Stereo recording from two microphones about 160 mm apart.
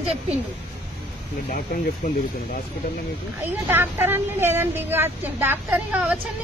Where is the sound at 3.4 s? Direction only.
15° right (ahead or behind).